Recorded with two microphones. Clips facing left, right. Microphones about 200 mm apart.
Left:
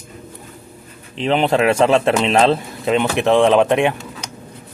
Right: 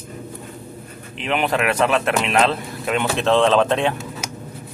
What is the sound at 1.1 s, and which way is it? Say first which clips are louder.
Speech: left 5 dB; 30° left (ahead or behind).